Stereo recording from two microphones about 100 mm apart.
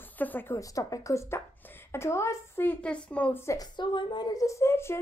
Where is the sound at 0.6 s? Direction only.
35° left (ahead or behind).